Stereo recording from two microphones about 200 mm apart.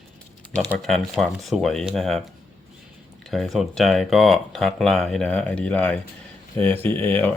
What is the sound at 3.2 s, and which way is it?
Speech, centre (ahead or behind).